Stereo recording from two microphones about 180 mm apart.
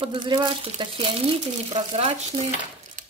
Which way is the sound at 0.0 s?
25° right (ahead or behind).